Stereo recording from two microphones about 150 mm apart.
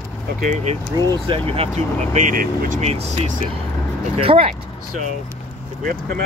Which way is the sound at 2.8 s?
45° right (ahead or behind).